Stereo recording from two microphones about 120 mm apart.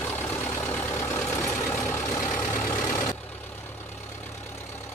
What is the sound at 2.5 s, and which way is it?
Vehicle, 10° left (ahead or behind).